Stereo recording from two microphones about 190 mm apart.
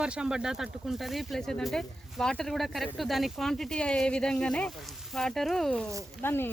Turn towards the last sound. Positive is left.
turn(degrees=10)  # may be behind; listen again after turning